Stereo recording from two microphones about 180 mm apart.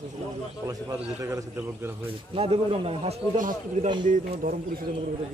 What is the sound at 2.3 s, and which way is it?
Speech, 35° right (ahead or behind).